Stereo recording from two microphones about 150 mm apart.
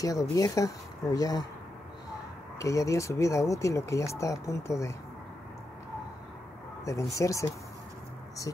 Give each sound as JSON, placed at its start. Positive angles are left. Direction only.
{"t": 0.0, "sound": "speech", "side_deg": 25}
{"t": 2.6, "sound": "speech", "side_deg": 20}
{"t": 6.8, "sound": "speech", "side_deg": 20}